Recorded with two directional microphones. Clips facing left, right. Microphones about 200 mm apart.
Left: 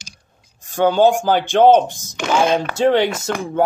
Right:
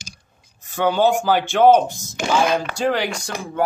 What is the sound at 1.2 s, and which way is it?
Speech, 20° left (ahead or behind).